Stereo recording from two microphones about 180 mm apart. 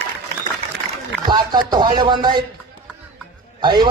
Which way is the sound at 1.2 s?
25° right (ahead or behind).